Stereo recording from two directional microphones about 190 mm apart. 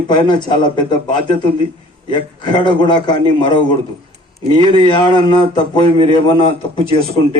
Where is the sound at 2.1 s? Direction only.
25° left (ahead or behind).